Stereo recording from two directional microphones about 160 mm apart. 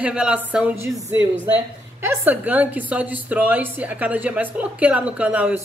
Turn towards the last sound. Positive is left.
turn(degrees=-10)  # may be behind; listen again after turning